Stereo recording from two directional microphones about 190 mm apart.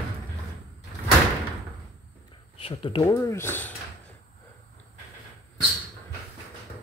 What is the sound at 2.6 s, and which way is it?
Speech, 30° left (ahead or behind).